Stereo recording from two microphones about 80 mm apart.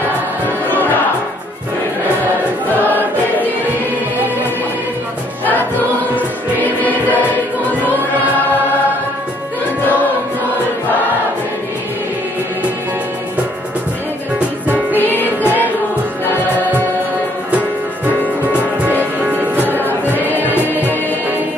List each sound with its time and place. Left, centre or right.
0.7 s music: left
2.7 s choir: left
6.1 s music: left
15.0 s music: left
17.5 s music: centre
19.2 s music: right